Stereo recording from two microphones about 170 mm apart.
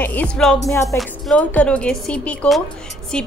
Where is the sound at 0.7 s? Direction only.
15° left (ahead or behind).